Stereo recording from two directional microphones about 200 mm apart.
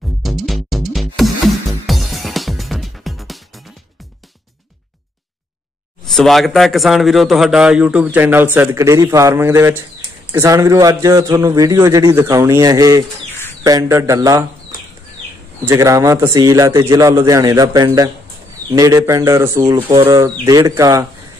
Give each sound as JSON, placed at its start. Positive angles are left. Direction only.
{"t": 0.2, "sound": "music", "side_deg": 0}
{"t": 6.0, "sound": "a man's voice", "side_deg": 0}